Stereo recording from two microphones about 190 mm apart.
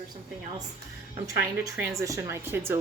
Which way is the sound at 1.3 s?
15° right (ahead or behind).